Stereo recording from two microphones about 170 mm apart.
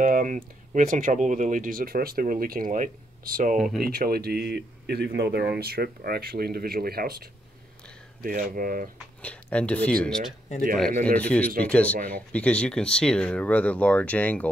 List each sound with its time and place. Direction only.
0.0 s speech: 50° right (ahead or behind)
3.5 s speech: centre (ahead or behind)
3.8 s speech: 60° right (ahead or behind)
9.2 s speech: 5° left (ahead or behind)
10.9 s speech: 45° right (ahead or behind)
11.1 s speech: 10° left (ahead or behind)